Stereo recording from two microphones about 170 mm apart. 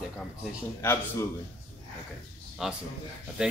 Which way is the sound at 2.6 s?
5° right (ahead or behind).